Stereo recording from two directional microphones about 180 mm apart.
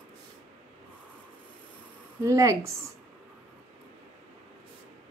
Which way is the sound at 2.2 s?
15° right (ahead or behind).